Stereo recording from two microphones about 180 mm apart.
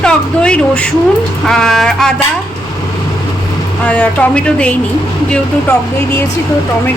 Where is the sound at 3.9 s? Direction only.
10° left (ahead or behind).